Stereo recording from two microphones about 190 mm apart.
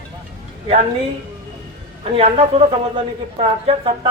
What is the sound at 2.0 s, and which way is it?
A man's voice, 30° right (ahead or behind).